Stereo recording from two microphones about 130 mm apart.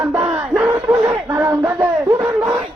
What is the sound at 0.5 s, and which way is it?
Speech, 20° right (ahead or behind).